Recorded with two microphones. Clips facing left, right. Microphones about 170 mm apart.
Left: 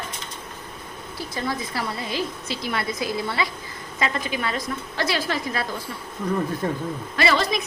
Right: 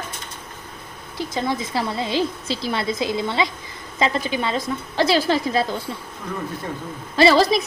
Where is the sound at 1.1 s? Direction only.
20° right (ahead or behind).